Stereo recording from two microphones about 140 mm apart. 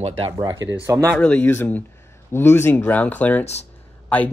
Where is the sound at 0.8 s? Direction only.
20° right (ahead or behind).